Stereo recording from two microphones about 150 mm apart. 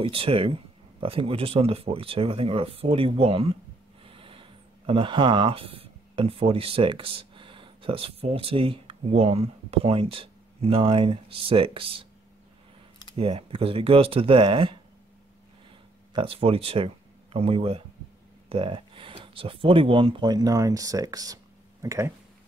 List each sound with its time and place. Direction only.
0.0 s speech: 35° right (ahead or behind)
13.1 s speech: 35° right (ahead or behind)
16.1 s speech: 35° right (ahead or behind); by 22.1 s 20° right (ahead or behind)